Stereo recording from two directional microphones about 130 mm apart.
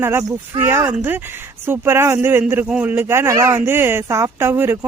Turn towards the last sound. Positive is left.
turn(degrees=-15)  # may be behind; listen again after turning